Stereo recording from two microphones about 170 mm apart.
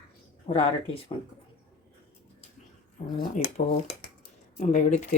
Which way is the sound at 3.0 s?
45° left (ahead or behind).